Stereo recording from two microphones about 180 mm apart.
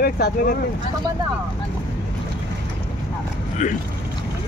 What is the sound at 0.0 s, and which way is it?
Speech, 55° left (ahead or behind).